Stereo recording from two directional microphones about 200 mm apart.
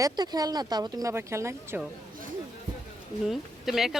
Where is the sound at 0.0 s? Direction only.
20° right (ahead or behind).